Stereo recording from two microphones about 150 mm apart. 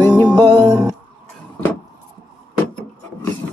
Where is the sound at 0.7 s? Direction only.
25° right (ahead or behind).